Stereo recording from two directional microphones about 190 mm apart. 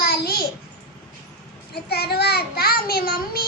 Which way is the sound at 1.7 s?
55° left (ahead or behind).